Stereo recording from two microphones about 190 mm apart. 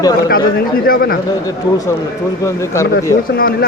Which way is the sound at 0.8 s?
50° left (ahead or behind).